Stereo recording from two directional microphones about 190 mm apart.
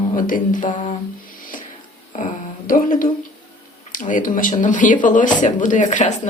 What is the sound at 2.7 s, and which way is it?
Speech, 45° left (ahead or behind).